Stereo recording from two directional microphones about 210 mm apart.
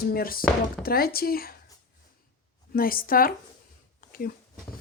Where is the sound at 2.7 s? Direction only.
45° left (ahead or behind).